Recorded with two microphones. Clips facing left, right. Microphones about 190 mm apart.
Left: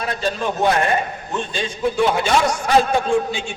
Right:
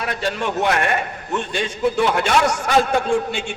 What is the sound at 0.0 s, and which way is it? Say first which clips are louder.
A man's voice: left 1 dB; 75° right (ahead or behind).